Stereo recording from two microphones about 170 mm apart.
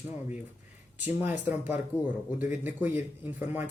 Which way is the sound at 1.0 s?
10° right (ahead or behind).